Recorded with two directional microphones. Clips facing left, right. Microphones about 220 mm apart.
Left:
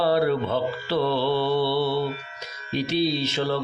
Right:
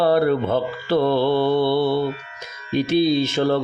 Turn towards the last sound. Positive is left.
turn(degrees=-50)  # may be behind; listen again after turning